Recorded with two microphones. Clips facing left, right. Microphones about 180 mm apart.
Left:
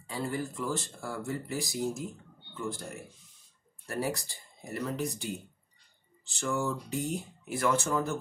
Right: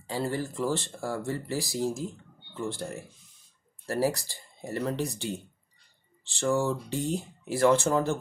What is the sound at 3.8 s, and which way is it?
Speech, 30° right (ahead or behind).